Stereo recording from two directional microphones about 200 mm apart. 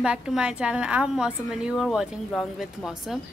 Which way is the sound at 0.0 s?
5° right (ahead or behind).